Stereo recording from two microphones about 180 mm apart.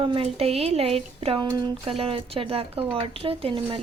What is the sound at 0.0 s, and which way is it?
Speech, 30° right (ahead or behind).